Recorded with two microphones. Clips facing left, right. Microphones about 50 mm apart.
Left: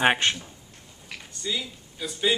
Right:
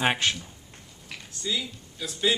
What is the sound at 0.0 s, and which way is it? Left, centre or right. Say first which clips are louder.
Speech: left 3 dB; centre.